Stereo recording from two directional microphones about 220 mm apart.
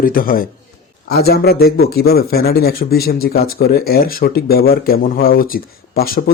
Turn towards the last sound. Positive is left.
turn(degrees=45)  # may be behind; listen again after turning